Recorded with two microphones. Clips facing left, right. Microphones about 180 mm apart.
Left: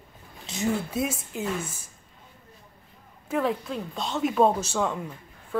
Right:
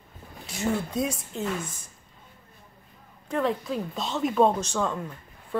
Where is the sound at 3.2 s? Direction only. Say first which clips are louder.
Even; centre (ahead or behind).